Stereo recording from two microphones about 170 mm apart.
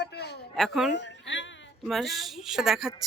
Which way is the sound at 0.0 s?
75° left (ahead or behind).